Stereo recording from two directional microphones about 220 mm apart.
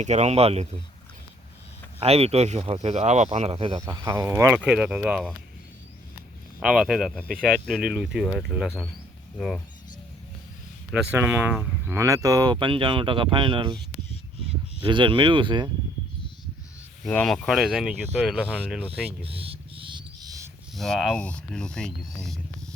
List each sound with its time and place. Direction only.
0.0 s speech: 30° right (ahead or behind)
2.0 s speech: 25° right (ahead or behind); by 5.3 s 5° right (ahead or behind)
6.6 s speech: 5° right (ahead or behind)
7.3 s speech: 40° right (ahead or behind)
7.9 s speech: 5° right (ahead or behind)
10.9 s speech: 10° right (ahead or behind)
17.1 s speech: 5° left (ahead or behind)
19.2 s owl: 25° right (ahead or behind)
20.7 s speech: centre (ahead or behind)